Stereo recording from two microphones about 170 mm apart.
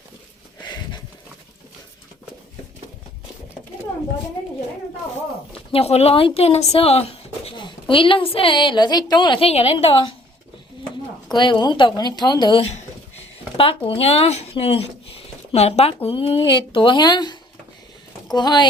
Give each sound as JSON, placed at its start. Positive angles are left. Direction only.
{"t": 5.7, "sound": "speech", "side_deg": 35}
{"t": 11.3, "sound": "speech", "side_deg": 25}